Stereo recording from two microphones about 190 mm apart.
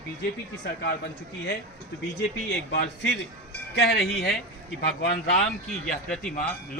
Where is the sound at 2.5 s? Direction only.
65° left (ahead or behind).